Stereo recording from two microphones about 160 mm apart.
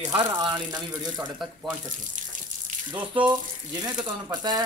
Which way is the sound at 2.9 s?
30° right (ahead or behind).